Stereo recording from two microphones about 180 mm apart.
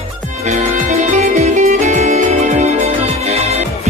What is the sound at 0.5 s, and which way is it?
Music, 45° right (ahead or behind).